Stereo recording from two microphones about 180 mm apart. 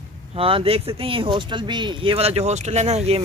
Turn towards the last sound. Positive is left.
turn(degrees=-35)  # may be behind; listen again after turning